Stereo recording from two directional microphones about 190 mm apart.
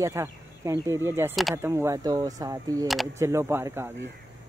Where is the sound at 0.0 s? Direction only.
15° right (ahead or behind).